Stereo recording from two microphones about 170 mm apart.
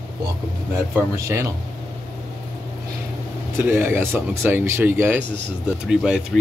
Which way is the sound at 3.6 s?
15° right (ahead or behind).